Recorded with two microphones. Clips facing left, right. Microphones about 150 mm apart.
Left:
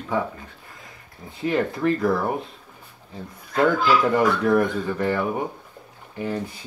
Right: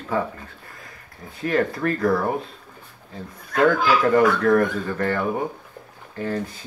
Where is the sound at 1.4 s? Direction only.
15° left (ahead or behind).